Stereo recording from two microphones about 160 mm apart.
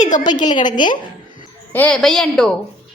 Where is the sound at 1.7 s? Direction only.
10° left (ahead or behind).